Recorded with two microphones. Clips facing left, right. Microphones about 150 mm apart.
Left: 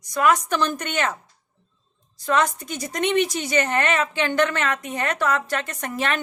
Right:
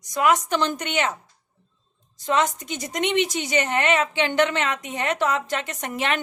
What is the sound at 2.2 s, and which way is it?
A woman's voice, 20° right (ahead or behind).